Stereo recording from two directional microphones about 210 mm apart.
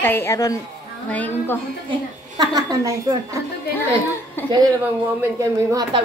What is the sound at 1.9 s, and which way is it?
A woman's voice, 20° right (ahead or behind).